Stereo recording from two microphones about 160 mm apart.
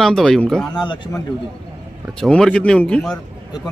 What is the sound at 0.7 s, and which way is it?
Speech, 25° left (ahead or behind).